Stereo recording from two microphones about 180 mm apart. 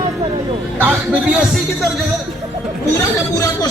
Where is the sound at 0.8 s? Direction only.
10° right (ahead or behind).